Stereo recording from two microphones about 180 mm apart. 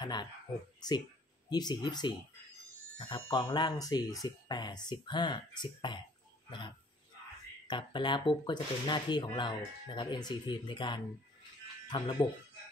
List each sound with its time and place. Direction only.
0.0 s a sound: 25° left (ahead or behind)
0.7 s speech: 20° left (ahead or behind)
7.6 s speech: 25° left (ahead or behind)